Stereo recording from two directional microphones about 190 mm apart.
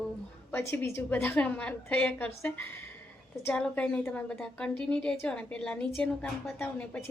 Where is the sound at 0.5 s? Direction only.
10° left (ahead or behind).